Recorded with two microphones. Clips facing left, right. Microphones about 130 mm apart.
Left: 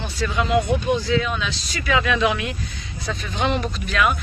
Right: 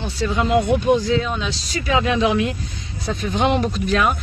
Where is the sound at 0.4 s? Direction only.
40° right (ahead or behind).